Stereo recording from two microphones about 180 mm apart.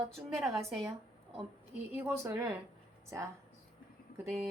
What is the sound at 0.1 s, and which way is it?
Speech, centre (ahead or behind).